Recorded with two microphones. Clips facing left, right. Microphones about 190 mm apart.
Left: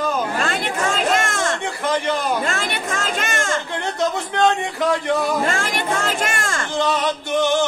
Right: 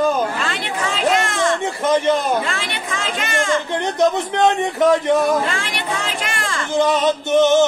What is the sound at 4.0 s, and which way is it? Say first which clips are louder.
Speech: right 3 dB; 20° right (ahead or behind).